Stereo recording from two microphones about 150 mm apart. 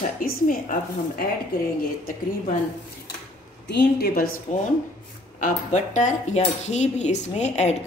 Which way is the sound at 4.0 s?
75° left (ahead or behind).